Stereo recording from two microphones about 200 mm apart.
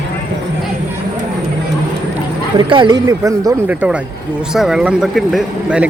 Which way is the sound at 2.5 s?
25° right (ahead or behind).